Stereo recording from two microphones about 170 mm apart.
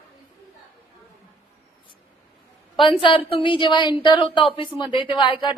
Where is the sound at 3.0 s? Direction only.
30° left (ahead or behind).